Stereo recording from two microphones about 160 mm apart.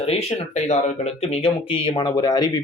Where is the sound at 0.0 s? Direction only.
40° left (ahead or behind).